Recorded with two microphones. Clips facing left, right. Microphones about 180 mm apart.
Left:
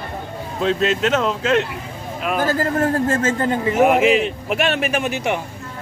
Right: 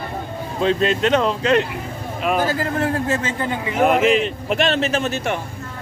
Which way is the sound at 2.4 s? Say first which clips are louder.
Left 2 dB; 45° left (ahead or behind).